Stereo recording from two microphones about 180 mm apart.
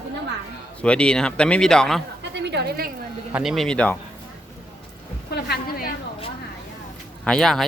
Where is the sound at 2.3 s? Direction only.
70° right (ahead or behind).